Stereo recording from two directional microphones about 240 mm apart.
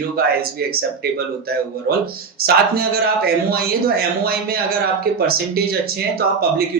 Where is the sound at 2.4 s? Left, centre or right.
Right.